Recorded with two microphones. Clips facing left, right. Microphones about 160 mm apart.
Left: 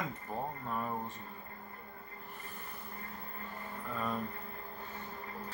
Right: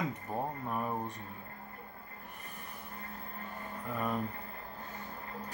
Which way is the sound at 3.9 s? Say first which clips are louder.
Right 2 dB; 15° right (ahead or behind).